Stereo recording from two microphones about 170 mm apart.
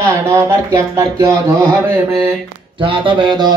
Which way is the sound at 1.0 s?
15° right (ahead or behind).